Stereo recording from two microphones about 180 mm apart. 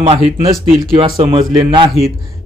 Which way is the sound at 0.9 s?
30° right (ahead or behind).